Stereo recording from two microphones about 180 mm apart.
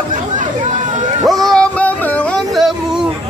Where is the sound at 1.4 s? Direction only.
5° left (ahead or behind).